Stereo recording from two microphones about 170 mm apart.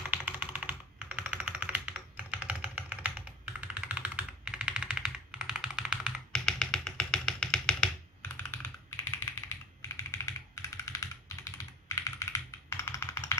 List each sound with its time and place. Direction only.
0.1 s typing: 10° right (ahead or behind); by 9.2 s 15° left (ahead or behind)
9.8 s computer keyboard: 15° left (ahead or behind)